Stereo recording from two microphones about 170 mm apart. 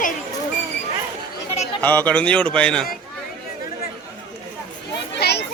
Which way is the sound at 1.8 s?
10° left (ahead or behind).